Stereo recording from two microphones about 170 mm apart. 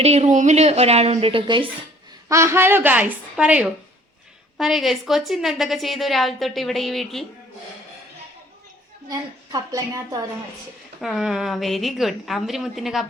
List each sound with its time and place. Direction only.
0.0 s a woman's voice: 40° right (ahead or behind)
2.3 s a woman's voice: 15° right (ahead or behind); by 7.3 s centre (ahead or behind)
9.0 s a woman's voice: 20° right (ahead or behind)
11.0 s a woman's voice: centre (ahead or behind)